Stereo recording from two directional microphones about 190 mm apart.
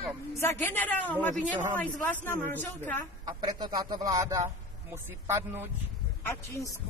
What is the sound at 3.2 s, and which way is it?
Speech, 20° right (ahead or behind).